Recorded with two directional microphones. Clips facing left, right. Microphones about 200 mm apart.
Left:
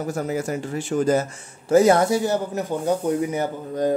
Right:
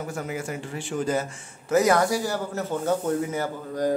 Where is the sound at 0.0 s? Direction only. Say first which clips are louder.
Left 6 dB; 40° left (ahead or behind).